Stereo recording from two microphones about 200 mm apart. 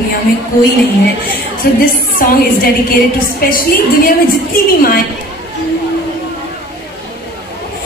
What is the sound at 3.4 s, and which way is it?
Speech, 50° left (ahead or behind).